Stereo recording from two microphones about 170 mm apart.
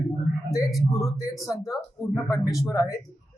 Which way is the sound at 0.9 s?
20° left (ahead or behind).